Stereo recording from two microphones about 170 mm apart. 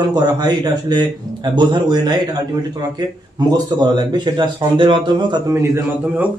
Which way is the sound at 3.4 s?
25° right (ahead or behind).